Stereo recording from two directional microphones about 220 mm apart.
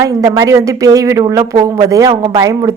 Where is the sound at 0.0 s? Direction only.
15° right (ahead or behind).